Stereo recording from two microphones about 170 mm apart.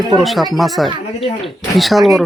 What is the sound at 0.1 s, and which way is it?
Speech, centre (ahead or behind).